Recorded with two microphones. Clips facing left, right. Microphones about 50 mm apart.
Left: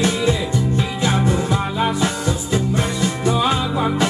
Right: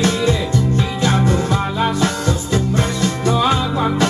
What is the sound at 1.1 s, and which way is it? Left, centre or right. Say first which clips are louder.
Music: right 1 dB; right.